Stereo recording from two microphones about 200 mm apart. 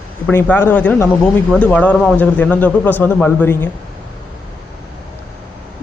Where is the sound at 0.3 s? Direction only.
10° left (ahead or behind).